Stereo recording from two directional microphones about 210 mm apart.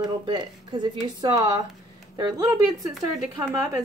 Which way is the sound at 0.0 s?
20° right (ahead or behind).